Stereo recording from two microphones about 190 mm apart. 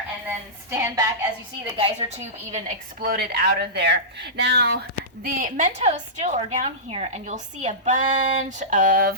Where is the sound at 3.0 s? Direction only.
50° right (ahead or behind).